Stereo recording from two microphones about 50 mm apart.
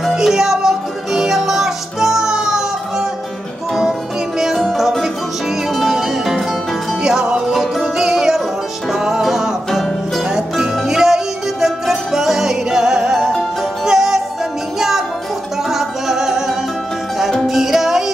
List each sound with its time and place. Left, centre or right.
0.1 s music: centre
4.6 s music: centre
7.4 s music: centre